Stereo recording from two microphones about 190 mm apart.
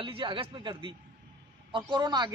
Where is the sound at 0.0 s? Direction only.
25° right (ahead or behind).